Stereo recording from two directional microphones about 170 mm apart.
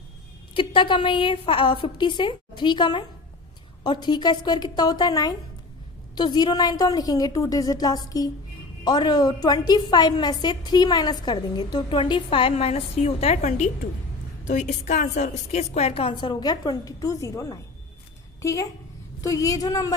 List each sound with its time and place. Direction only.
0.6 s a woman's voice: 30° left (ahead or behind)